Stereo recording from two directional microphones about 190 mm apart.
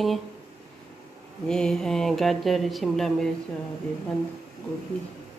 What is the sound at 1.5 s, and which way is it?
A woman's voice, 5° left (ahead or behind).